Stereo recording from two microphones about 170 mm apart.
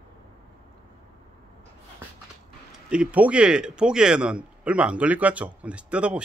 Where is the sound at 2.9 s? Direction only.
5° right (ahead or behind).